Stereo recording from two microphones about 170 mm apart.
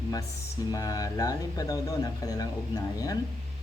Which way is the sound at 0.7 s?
20° left (ahead or behind).